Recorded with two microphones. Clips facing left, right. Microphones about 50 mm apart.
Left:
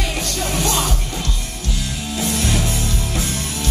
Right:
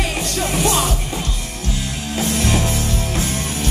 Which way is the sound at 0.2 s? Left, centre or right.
Right.